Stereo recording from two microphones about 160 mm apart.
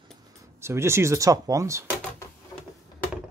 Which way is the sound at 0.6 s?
15° right (ahead or behind).